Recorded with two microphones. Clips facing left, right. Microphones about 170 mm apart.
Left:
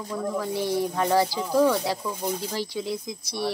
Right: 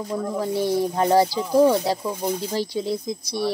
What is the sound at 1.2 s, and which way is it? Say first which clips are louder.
Speech: right 4 dB; 20° right (ahead or behind).